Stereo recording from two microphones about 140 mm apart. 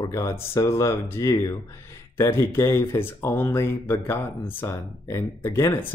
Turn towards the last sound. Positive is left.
turn(degrees=20)  # may be behind; listen again after turning